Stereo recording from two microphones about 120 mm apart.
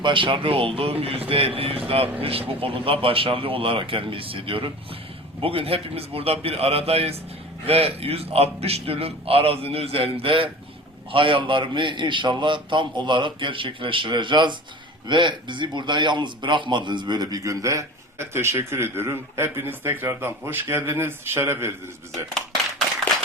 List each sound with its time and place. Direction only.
0.0 s a man's voice: 45° right (ahead or behind); by 21.7 s 20° right (ahead or behind)